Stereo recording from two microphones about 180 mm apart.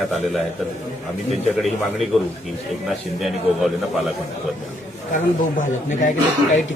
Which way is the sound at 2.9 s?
Centre (ahead or behind).